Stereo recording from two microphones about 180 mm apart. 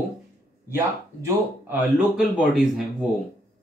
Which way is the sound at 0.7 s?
10° right (ahead or behind).